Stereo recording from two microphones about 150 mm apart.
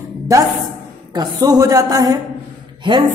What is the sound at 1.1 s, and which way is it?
A woman's voice, 25° right (ahead or behind).